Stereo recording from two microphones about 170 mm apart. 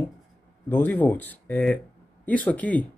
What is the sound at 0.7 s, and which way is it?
Speech, 10° left (ahead or behind).